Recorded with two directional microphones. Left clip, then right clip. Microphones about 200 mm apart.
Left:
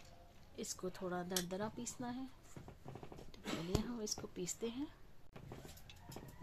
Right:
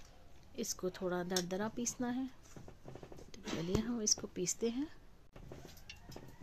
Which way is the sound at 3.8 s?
35° right (ahead or behind).